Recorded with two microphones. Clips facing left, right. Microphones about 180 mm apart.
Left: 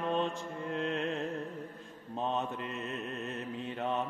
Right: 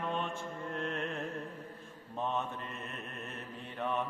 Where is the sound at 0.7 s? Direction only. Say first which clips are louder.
Left 4 dB; 20° left (ahead or behind).